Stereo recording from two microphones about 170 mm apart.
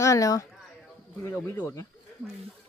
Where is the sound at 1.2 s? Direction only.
15° left (ahead or behind).